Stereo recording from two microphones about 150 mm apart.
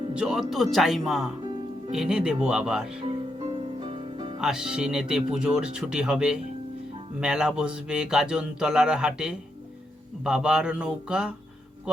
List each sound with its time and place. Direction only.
0.1 s speech: 5° right (ahead or behind)
3.1 s music: 40° right (ahead or behind)
4.4 s speech: 5° right (ahead or behind)